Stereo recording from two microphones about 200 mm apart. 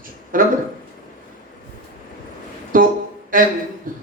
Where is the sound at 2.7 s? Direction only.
45° right (ahead or behind).